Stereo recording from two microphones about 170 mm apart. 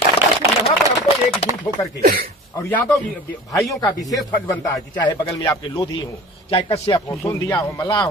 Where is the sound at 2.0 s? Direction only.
60° right (ahead or behind).